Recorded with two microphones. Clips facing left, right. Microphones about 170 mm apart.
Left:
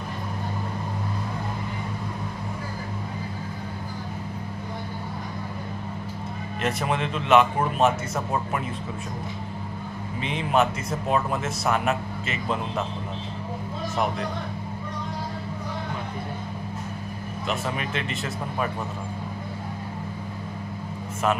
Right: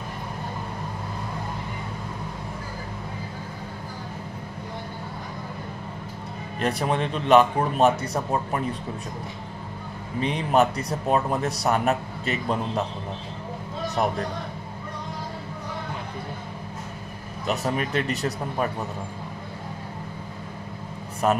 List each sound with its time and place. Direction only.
6.6 s speech: 35° right (ahead or behind)
10.2 s speech: 40° right (ahead or behind)
17.5 s speech: 40° right (ahead or behind)